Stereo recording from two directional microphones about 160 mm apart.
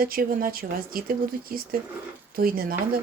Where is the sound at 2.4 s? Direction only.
65° right (ahead or behind).